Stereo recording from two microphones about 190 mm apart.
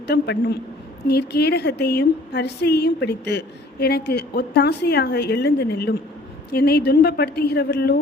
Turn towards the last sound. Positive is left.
turn(degrees=60)  # may be behind; listen again after turning